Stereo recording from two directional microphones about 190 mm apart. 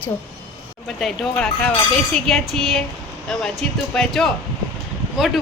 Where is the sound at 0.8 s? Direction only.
Centre (ahead or behind).